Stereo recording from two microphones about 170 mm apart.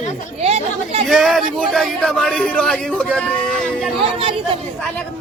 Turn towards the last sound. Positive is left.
turn(degrees=-35)  # may be behind; listen again after turning